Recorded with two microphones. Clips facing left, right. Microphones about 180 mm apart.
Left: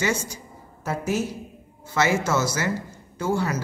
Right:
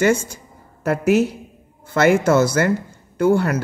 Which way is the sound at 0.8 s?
65° right (ahead or behind).